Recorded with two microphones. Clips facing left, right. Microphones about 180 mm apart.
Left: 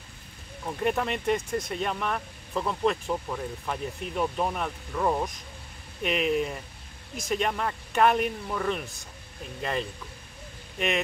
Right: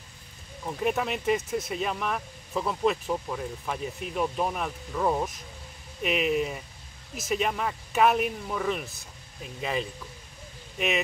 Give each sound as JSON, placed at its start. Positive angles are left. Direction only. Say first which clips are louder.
{"t": 0.7, "sound": "speech", "louder": "even", "side_deg": 0}